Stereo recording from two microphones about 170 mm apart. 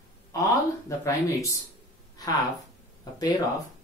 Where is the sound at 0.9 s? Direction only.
15° left (ahead or behind).